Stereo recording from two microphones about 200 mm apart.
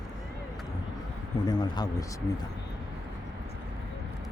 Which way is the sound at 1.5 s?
20° left (ahead or behind).